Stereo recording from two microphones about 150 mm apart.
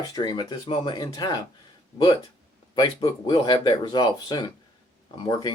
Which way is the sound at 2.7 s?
30° left (ahead or behind).